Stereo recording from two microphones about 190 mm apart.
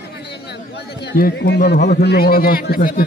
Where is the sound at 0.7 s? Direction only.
55° left (ahead or behind).